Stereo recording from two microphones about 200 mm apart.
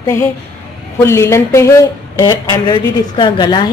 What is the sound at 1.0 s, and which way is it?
Speech, 15° left (ahead or behind).